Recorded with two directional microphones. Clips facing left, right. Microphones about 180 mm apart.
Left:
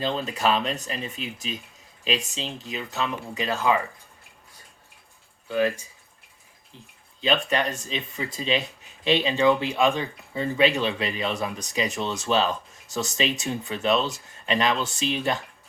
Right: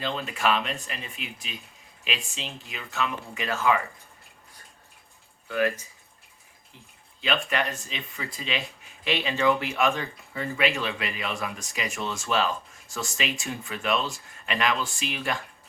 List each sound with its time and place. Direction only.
0.0 s speech: 30° left (ahead or behind)
3.5 s speech: 15° left (ahead or behind)
5.5 s speech: 20° left (ahead or behind)
7.2 s speech: 30° left (ahead or behind)